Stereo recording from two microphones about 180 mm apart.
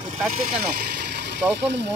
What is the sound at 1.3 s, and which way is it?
Speech, 70° right (ahead or behind).